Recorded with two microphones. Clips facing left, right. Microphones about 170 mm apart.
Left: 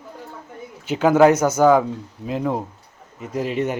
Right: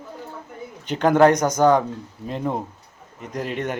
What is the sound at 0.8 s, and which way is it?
Speech, 5° left (ahead or behind).